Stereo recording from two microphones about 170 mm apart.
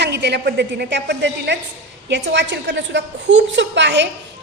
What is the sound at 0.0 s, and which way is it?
A woman's voice, 80° right.